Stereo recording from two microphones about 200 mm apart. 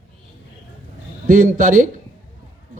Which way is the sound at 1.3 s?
45° right (ahead or behind).